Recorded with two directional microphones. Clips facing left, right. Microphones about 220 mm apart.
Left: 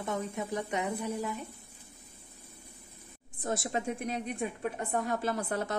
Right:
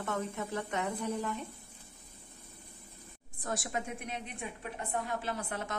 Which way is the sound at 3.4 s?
25° left (ahead or behind).